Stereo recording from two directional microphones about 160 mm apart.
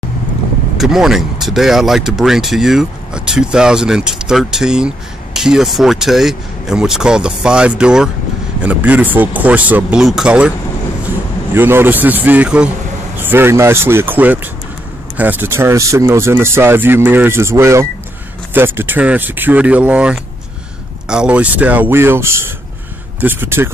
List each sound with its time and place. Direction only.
0.7 s speech: centre (ahead or behind)
11.5 s speech: 15° right (ahead or behind)